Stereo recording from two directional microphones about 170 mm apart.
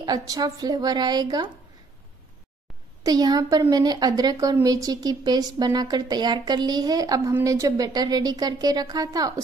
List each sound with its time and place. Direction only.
0.0 s a woman's voice: 20° right (ahead or behind)
3.0 s a woman's voice: 20° right (ahead or behind)